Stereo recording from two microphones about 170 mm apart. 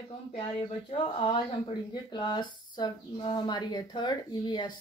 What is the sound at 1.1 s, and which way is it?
Speech, 30° left (ahead or behind).